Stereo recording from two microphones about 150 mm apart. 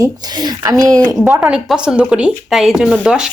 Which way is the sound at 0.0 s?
25° right (ahead or behind).